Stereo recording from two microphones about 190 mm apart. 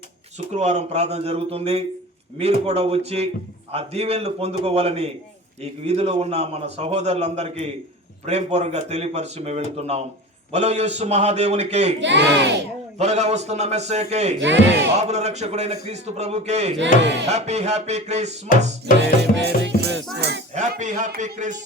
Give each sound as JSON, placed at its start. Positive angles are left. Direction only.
{"t": 0.5, "sound": "a man's voice", "side_deg": -35}
{"t": 11.9, "sound": "music", "side_deg": -70}
{"t": 13.0, "sound": "a man's voice", "side_deg": -35}
{"t": 14.4, "sound": "music", "side_deg": -70}
{"t": 15.0, "sound": "a man's voice", "side_deg": -35}
{"t": 16.7, "sound": "music", "side_deg": -70}
{"t": 17.2, "sound": "a man's voice", "side_deg": -35}
{"t": 18.9, "sound": "music", "side_deg": -65}
{"t": 19.9, "sound": "music", "side_deg": 0}
{"t": 20.5, "sound": "a man's voice", "side_deg": -40}